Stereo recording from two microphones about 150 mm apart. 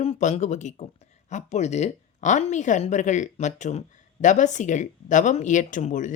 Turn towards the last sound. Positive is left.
turn(degrees=60)  # may be behind; listen again after turning